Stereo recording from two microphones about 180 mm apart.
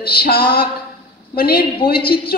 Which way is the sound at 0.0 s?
55° left (ahead or behind).